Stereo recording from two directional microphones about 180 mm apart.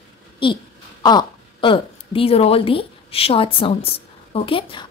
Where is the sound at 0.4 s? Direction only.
30° left (ahead or behind).